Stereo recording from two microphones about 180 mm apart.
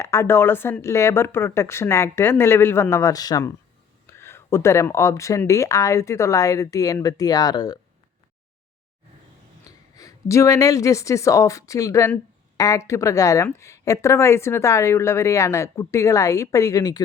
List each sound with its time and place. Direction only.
0.0 s speech: 15° left (ahead or behind)
9.6 s speech: 20° left (ahead or behind)